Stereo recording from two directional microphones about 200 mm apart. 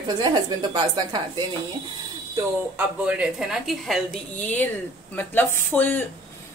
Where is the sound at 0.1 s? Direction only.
20° right (ahead or behind).